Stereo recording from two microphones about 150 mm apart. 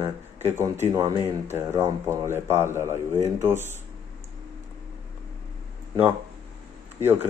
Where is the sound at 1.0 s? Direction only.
40° right (ahead or behind).